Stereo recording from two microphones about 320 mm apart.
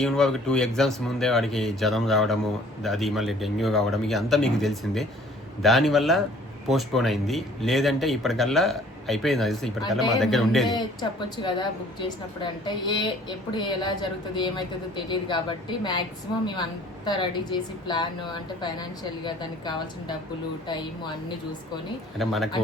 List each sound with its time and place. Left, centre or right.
0.0 s speech: centre
11.4 s a woman's voice: centre
17.1 s a woman's voice: centre
22.2 s speech: centre